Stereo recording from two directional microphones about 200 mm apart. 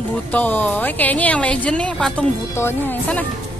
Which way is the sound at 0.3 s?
10° left (ahead or behind).